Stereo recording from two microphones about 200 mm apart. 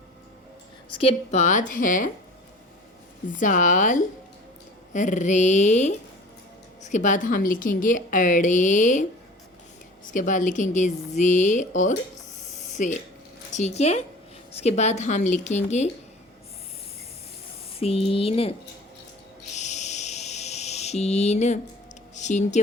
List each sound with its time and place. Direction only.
0.9 s a woman's voice: 30° left (ahead or behind)
3.3 s a woman's voice: 40° left (ahead or behind)
10.1 s a woman's voice: 40° left (ahead or behind)
17.7 s speech: 30° left (ahead or behind)
19.5 s a sound: 35° left (ahead or behind)
22.1 s speech: 35° left (ahead or behind)